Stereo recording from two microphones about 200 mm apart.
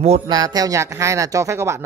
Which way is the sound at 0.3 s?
20° right (ahead or behind).